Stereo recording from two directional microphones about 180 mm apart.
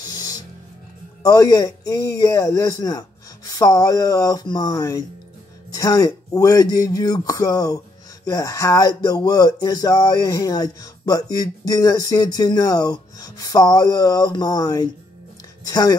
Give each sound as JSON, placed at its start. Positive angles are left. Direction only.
{"t": 0.0, "sound": "music", "side_deg": 20}
{"t": 1.2, "sound": "speech", "side_deg": 20}